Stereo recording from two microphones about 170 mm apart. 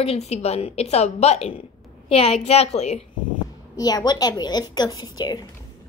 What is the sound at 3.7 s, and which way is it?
A woman's voice, 20° left (ahead or behind).